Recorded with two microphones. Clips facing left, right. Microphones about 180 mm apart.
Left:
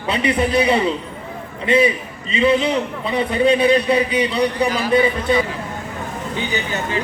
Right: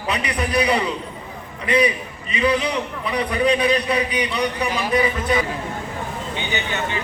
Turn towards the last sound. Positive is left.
turn(degrees=35)  # may be behind; listen again after turning